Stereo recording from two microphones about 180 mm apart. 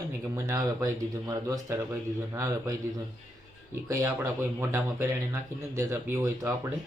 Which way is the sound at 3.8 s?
15° right (ahead or behind).